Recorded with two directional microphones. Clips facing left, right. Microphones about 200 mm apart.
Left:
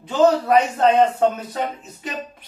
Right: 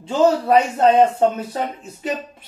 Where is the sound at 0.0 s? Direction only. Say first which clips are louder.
Even; 30° right (ahead or behind).